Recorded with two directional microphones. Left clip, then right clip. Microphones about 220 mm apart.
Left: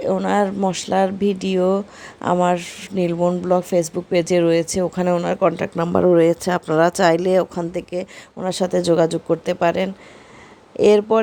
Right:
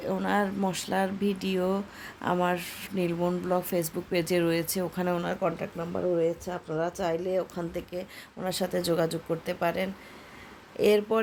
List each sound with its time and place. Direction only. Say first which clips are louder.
0.0 s speech: left 9 dB; 25° left (ahead or behind)